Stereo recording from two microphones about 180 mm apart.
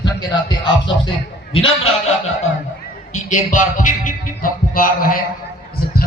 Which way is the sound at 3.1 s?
45° left (ahead or behind).